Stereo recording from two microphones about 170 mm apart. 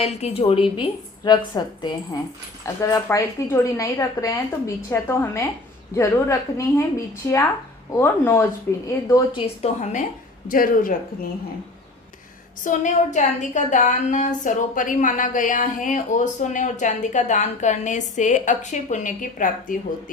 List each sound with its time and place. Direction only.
0.0 s a woman's voice: 40° left (ahead or behind); by 9.4 s 20° left (ahead or behind)
9.6 s a woman's voice: 45° left (ahead or behind)
10.5 s speech: 55° left (ahead or behind)
12.6 s a woman's voice: 45° left (ahead or behind)